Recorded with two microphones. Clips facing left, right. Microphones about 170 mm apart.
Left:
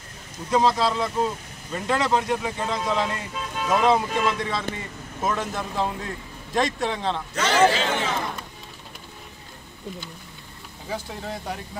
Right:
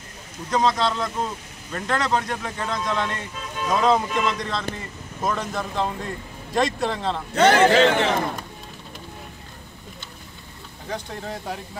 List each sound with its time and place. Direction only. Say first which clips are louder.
0.5 s speech: left 1 dB; 5° left (ahead or behind)
7.3 s a man's voice: right 5 dB; 60° right (ahead or behind)
10.9 s speech: right 1 dB; centre (ahead or behind)